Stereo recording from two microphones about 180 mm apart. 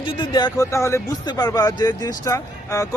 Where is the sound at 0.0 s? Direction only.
25° left (ahead or behind).